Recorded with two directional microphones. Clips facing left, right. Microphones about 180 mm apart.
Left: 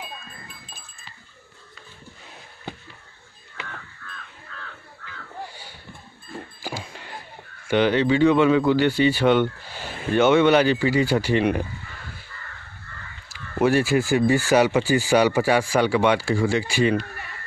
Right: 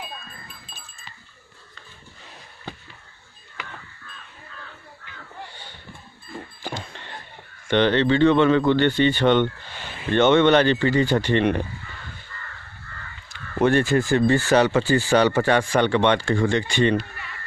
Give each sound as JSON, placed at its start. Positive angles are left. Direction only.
{"t": 3.6, "sound": "crow", "side_deg": 25}
{"t": 5.5, "sound": "a sound", "side_deg": 10}
{"t": 6.6, "sound": "speech", "side_deg": 5}
{"t": 13.3, "sound": "speech", "side_deg": 5}